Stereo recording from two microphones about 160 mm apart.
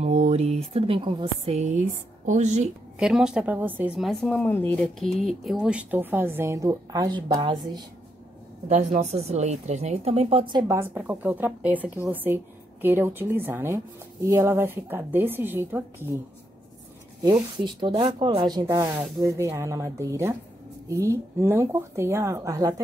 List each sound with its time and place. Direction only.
0.0 s speech: 40° right (ahead or behind)
3.0 s speech: 5° right (ahead or behind); by 4.7 s 10° left (ahead or behind)
5.0 s speech: centre (ahead or behind); by 7.8 s 25° right (ahead or behind)
8.6 s speech: 50° right (ahead or behind)
10.7 s speech: 15° right (ahead or behind)
17.2 s speech: 25° right (ahead or behind)